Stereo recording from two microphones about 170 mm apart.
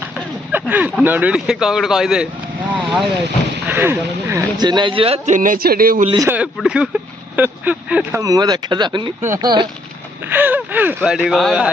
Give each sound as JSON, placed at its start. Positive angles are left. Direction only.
{"t": 0.5, "sound": "speech", "side_deg": -10}
{"t": 3.7, "sound": "speech", "side_deg": -15}
{"t": 6.2, "sound": "speech", "side_deg": -10}
{"t": 8.2, "sound": "speech", "side_deg": -20}
{"t": 10.2, "sound": "speech", "side_deg": -10}